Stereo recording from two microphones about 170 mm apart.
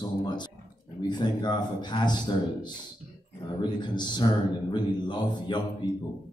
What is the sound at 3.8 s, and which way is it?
Speech, 25° left (ahead or behind).